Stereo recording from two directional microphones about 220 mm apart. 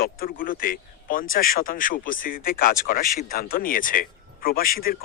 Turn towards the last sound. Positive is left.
turn(degrees=40)  # may be behind; listen again after turning